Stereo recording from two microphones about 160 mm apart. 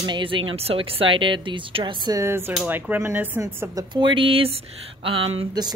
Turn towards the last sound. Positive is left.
turn(degrees=-30)  # may be behind; listen again after turning